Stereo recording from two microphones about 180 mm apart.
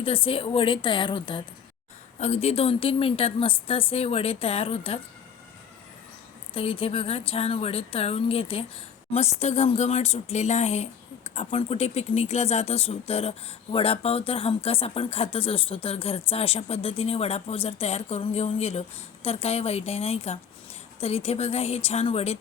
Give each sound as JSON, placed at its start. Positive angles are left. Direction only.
{"t": 0.0, "sound": "a woman's voice", "side_deg": 30}
{"t": 6.5, "sound": "speech", "side_deg": 30}